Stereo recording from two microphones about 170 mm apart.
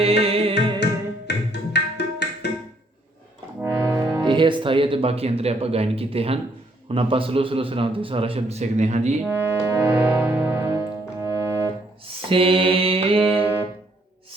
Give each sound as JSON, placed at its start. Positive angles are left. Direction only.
{"t": 0.0, "sound": "music", "side_deg": -35}
{"t": 1.3, "sound": "music", "side_deg": 90}
{"t": 3.6, "sound": "music", "side_deg": -10}
{"t": 4.3, "sound": "a man's voice", "side_deg": -30}
{"t": 9.2, "sound": "music", "side_deg": -15}
{"t": 12.3, "sound": "a man's voice", "side_deg": -30}
{"t": 13.4, "sound": "music", "side_deg": -10}